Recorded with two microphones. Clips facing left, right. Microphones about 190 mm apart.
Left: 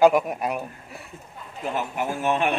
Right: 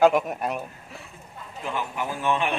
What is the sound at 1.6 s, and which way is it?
Speech, 45° left (ahead or behind).